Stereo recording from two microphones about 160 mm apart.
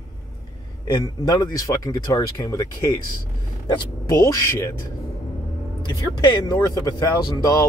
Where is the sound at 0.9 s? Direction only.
25° left (ahead or behind).